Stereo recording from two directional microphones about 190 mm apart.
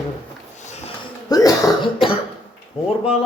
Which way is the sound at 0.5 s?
35° left (ahead or behind).